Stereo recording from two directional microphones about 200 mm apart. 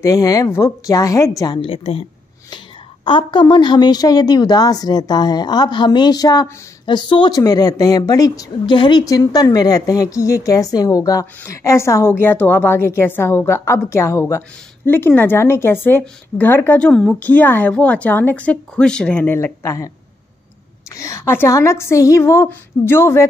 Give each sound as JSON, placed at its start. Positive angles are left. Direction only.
{"t": 0.0, "sound": "speech", "side_deg": 15}
{"t": 3.1, "sound": "a woman's voice", "side_deg": 25}
{"t": 20.9, "sound": "speech", "side_deg": 15}